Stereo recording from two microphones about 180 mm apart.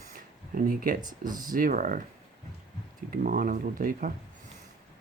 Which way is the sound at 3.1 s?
50° right (ahead or behind).